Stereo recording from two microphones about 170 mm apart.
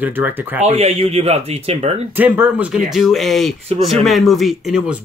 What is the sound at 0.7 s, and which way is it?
Speech, 40° right (ahead or behind).